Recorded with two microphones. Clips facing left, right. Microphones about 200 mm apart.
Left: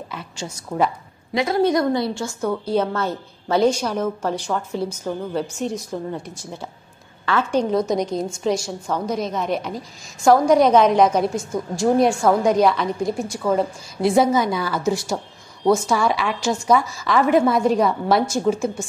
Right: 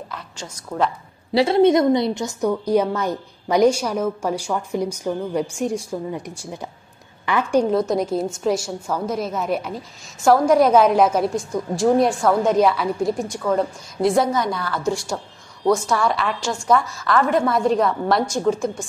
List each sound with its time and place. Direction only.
0.1 s a woman's voice: 5° left (ahead or behind)
1.3 s a woman's voice: 30° right (ahead or behind)
7.7 s a woman's voice: centre (ahead or behind)